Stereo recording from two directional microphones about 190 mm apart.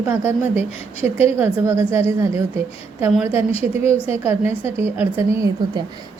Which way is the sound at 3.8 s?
35° left (ahead or behind).